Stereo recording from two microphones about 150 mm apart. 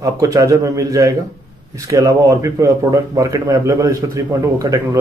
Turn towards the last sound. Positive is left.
turn(degrees=-20)  # may be behind; listen again after turning